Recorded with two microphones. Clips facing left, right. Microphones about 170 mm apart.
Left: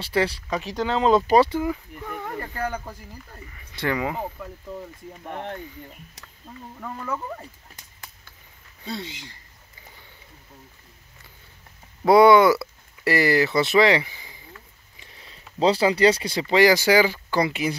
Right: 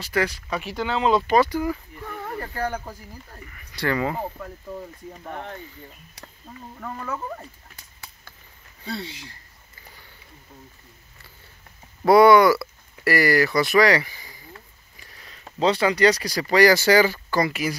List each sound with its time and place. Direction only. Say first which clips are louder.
0.0 s speech: left 1 dB; 30° left (ahead or behind)
2.0 s a sound: even; 5° left (ahead or behind)
3.5 s speech: right 1 dB; 20° left (ahead or behind)
12.1 s speech: even; 20° left (ahead or behind)
15.0 s speech: even; 30° left (ahead or behind)